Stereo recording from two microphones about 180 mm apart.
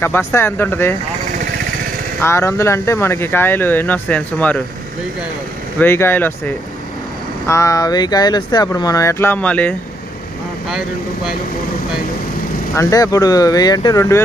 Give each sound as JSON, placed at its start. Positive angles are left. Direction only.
{"t": 0.0, "sound": "speech", "side_deg": 15}
{"t": 2.1, "sound": "speech", "side_deg": 15}
{"t": 5.8, "sound": "speech", "side_deg": 10}
{"t": 12.7, "sound": "speech", "side_deg": 20}